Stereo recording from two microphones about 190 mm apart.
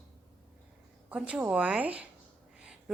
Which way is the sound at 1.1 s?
5° right (ahead or behind).